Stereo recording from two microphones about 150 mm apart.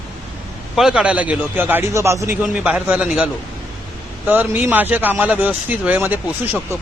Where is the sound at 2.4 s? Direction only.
5° right (ahead or behind).